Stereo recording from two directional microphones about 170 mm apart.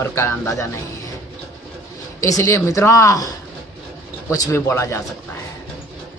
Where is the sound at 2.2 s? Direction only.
20° left (ahead or behind).